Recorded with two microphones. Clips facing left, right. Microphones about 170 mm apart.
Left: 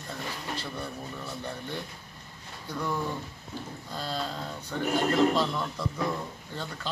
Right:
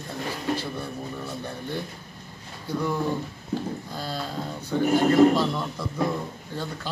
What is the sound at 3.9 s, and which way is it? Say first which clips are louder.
A man's voice: right 2 dB; 5° right (ahead or behind).